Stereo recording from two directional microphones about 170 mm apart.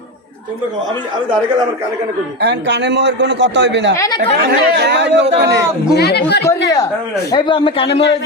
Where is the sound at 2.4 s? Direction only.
80° right.